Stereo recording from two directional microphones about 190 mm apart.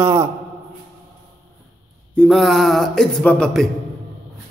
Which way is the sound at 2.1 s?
Centre (ahead or behind).